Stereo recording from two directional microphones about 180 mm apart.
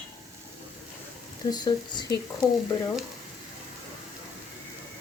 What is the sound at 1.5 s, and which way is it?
Speech, 20° left (ahead or behind).